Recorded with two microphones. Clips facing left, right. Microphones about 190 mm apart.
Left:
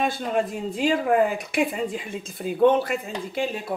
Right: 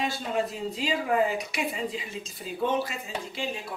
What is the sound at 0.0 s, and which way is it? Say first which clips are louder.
Speech: left 4 dB; 55° left (ahead or behind).